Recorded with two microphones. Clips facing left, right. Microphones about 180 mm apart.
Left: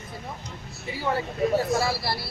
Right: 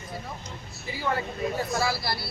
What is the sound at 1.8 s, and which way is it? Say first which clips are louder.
Speech: left 1 dB; 25° left (ahead or behind).